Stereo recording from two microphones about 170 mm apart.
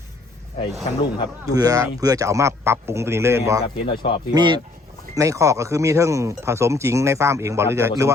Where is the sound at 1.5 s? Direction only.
20° right (ahead or behind).